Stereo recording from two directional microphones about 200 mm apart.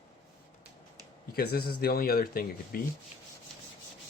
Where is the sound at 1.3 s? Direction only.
50° left (ahead or behind).